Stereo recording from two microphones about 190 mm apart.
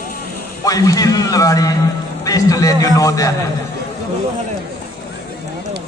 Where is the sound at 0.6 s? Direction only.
20° left (ahead or behind).